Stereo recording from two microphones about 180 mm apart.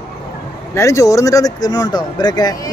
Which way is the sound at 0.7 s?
15° left (ahead or behind).